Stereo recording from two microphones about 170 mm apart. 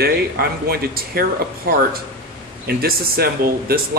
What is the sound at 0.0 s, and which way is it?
Speech, 65° right (ahead or behind).